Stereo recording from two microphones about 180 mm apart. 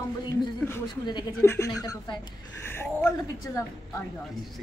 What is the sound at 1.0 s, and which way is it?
A woman's voice, 20° left (ahead or behind).